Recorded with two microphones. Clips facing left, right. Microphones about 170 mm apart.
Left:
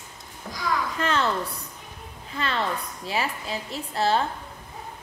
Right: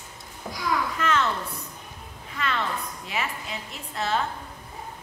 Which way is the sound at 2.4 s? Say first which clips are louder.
Left 1 dB; 30° left (ahead or behind).